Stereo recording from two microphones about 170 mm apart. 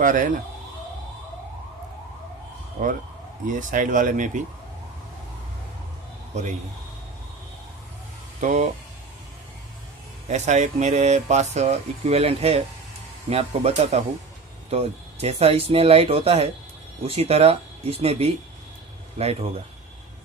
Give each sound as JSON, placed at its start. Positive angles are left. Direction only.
{"t": 0.0, "sound": "speech", "side_deg": -50}
{"t": 3.4, "sound": "speech", "side_deg": -50}
{"t": 6.3, "sound": "speech", "side_deg": -40}
{"t": 8.4, "sound": "speech", "side_deg": -45}
{"t": 10.2, "sound": "speech", "side_deg": -45}